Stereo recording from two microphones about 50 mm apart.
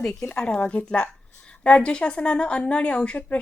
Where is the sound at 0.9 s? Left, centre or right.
Centre.